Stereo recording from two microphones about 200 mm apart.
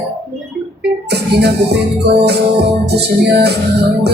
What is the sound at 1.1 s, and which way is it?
Music, 55° right (ahead or behind).